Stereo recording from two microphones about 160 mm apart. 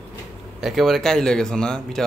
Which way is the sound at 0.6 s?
Centre (ahead or behind).